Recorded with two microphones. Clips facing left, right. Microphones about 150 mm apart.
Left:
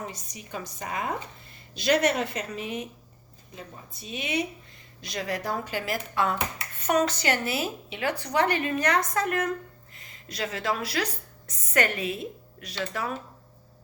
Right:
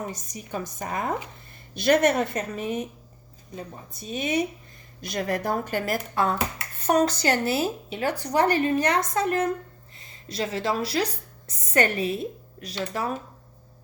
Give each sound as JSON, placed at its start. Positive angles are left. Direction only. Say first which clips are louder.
{"t": 0.1, "sound": "a woman's voice", "louder": "right 5 dB", "side_deg": -45}